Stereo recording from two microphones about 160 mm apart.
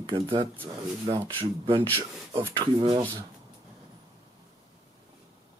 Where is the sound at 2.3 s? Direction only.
30° right (ahead or behind).